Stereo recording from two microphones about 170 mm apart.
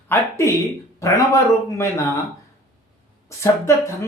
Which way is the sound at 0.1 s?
15° left (ahead or behind).